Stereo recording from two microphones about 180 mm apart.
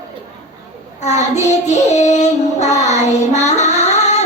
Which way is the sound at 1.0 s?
40° left (ahead or behind).